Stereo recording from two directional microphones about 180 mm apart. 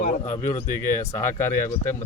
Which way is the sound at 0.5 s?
45° left (ahead or behind).